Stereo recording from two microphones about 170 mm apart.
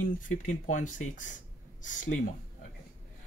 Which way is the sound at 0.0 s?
45° left (ahead or behind).